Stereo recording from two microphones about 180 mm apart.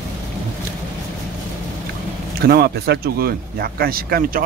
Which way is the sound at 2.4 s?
65° right (ahead or behind).